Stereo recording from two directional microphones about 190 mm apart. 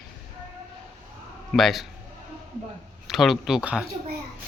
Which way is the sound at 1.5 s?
Centre (ahead or behind).